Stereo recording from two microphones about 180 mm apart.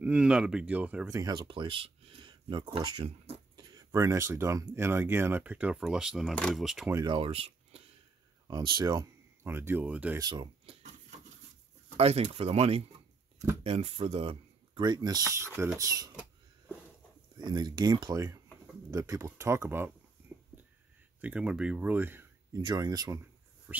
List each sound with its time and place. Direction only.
0.0 s speech: 5° right (ahead or behind)
1.1 s speech: 20° right (ahead or behind); by 6.9 s centre (ahead or behind)
6.9 s speech: 20° right (ahead or behind)
7.2 s speech: 35° right (ahead or behind)
8.5 s speech: 25° right (ahead or behind); by 10.2 s 10° right (ahead or behind)
10.2 s cash register: 25° right (ahead or behind)
12.0 s speech: 35° right (ahead or behind); by 16.1 s 20° right (ahead or behind)
17.4 s speech: 25° right (ahead or behind)
21.2 s speech: 5° right (ahead or behind)
22.6 s speech: 25° right (ahead or behind)
23.7 s a sound: 10° right (ahead or behind)